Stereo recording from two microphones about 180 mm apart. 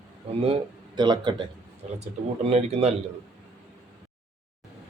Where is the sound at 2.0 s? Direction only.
35° right (ahead or behind).